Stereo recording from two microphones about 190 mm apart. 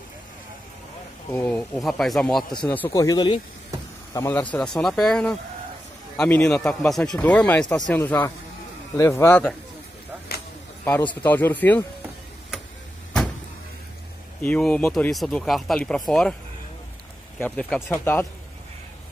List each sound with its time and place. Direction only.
1.3 s a man's voice: 10° left (ahead or behind)
1.8 s speech: centre (ahead or behind)
2.7 s a man's voice: 15° left (ahead or behind)
7.6 s speech: 20° left (ahead or behind)
7.9 s a man's voice: 10° left (ahead or behind)
10.8 s a man's voice: 10° left (ahead or behind)
14.4 s speech: 5° left (ahead or behind)
17.4 s speech: 5° left (ahead or behind)